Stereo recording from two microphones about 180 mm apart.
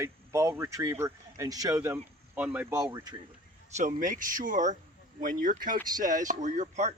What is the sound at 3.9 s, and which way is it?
Speech, 45° right (ahead or behind).